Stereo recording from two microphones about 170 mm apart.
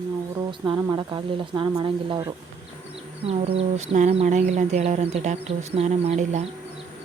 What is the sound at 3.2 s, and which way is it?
Speech, 35° right (ahead or behind).